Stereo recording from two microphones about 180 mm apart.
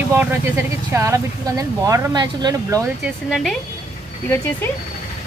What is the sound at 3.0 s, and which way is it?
Speech, centre (ahead or behind).